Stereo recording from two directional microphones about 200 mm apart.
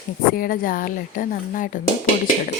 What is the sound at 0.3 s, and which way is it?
Speech, 45° left (ahead or behind).